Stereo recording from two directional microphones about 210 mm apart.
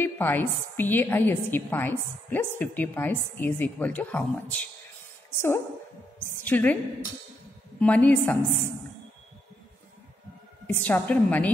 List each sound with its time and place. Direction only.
0.0 s a woman's voice: 10° left (ahead or behind)
7.8 s a woman's voice: 5° left (ahead or behind)
10.7 s a woman's voice: 10° left (ahead or behind)